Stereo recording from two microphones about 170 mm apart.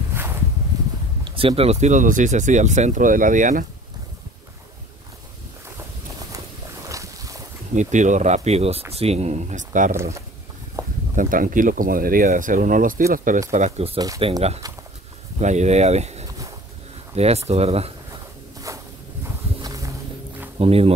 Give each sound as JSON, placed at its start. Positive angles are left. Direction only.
{"t": 1.2, "sound": "speech", "side_deg": -30}
{"t": 6.9, "sound": "boat", "side_deg": -20}
{"t": 7.7, "sound": "speech", "side_deg": -45}
{"t": 10.8, "sound": "a sound", "side_deg": -20}
{"t": 11.1, "sound": "speech", "side_deg": -50}
{"t": 13.9, "sound": "speech", "side_deg": -20}
{"t": 14.2, "sound": "speech", "side_deg": -35}
{"t": 18.7, "sound": "a sound", "side_deg": -20}
{"t": 19.6, "sound": "music", "side_deg": -20}
{"t": 20.5, "sound": "speech", "side_deg": -35}